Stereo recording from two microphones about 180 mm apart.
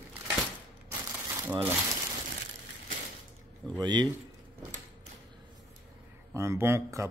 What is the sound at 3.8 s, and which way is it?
Speech, 25° right (ahead or behind).